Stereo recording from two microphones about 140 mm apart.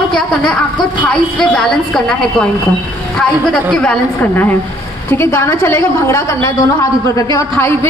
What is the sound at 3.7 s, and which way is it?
A woman's voice, 5° left (ahead or behind).